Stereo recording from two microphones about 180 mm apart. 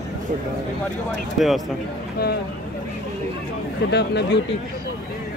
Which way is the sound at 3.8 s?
70° left (ahead or behind).